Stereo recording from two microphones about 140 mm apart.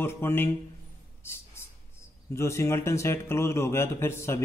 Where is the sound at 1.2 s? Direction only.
20° left (ahead or behind).